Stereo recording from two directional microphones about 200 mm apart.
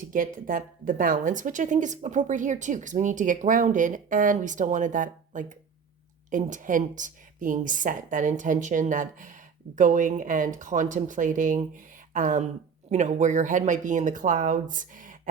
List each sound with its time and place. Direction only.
0.1 s a woman's voice: 45° right (ahead or behind)